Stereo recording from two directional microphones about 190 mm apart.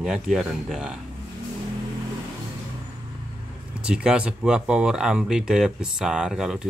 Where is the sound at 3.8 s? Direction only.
5° right (ahead or behind).